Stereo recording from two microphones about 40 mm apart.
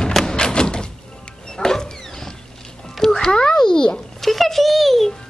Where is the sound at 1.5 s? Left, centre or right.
Centre.